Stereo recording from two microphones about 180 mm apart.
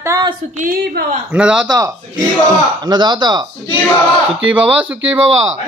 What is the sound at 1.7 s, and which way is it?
Speech, 20° right (ahead or behind).